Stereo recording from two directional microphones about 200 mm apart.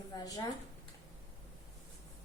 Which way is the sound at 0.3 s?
20° left (ahead or behind).